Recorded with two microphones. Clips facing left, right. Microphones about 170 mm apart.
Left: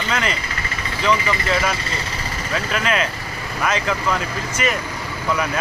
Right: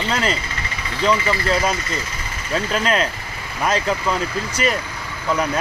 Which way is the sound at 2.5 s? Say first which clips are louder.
Right 2 dB; 35° right (ahead or behind).